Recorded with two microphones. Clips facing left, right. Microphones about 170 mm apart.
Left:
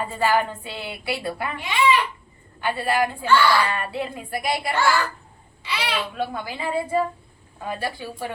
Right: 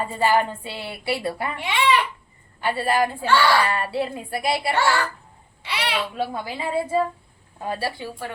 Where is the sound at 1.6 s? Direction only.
70° right (ahead or behind).